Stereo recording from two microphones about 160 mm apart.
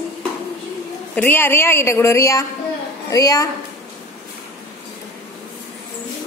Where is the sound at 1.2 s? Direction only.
15° left (ahead or behind).